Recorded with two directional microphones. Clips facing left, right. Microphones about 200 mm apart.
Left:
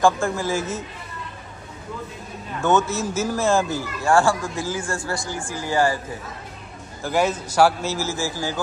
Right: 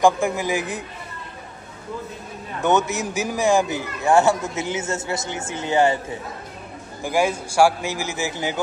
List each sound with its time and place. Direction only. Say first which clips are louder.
0.0 s a man's voice: right 1 dB; 15° right (ahead or behind)
2.6 s a man's voice: even; 20° right (ahead or behind)
7.0 s a man's voice: even; 10° right (ahead or behind)